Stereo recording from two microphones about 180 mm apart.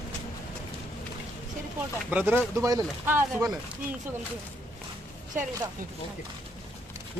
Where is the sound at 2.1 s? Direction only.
10° right (ahead or behind).